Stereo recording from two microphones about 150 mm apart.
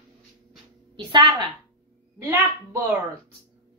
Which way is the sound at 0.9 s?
30° right (ahead or behind).